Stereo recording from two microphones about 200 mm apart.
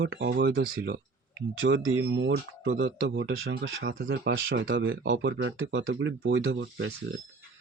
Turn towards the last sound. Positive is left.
turn(degrees=-65)  # may be behind; listen again after turning